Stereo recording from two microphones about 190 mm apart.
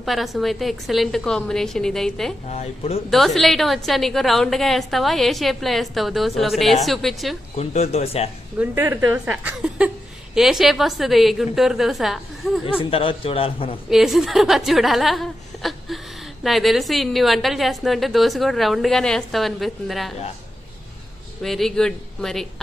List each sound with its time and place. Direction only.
0.0 s a woman's voice: centre (ahead or behind)
2.5 s speech: 35° left (ahead or behind)
3.1 s a woman's voice: centre (ahead or behind)
7.5 s speech: 35° left (ahead or behind)
8.5 s a woman's voice: 10° right (ahead or behind)
12.9 s a man's voice: 30° left (ahead or behind)
13.8 s a woman's voice: centre (ahead or behind)
21.4 s a woman's voice: centre (ahead or behind)